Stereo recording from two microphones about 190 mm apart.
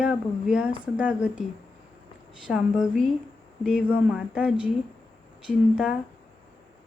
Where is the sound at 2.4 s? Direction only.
5° right (ahead or behind).